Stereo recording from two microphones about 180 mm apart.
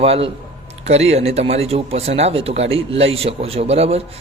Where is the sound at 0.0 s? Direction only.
35° right (ahead or behind).